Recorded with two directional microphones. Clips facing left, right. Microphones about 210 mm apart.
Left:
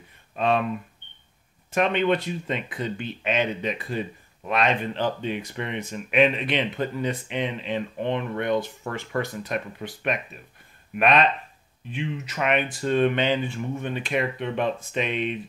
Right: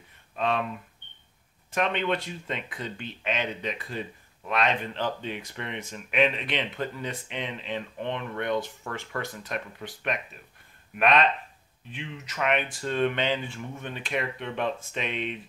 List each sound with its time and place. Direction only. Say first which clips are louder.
0.4 s speech: left 4 dB; 15° left (ahead or behind)
1.8 s speech: left 5 dB; 10° left (ahead or behind)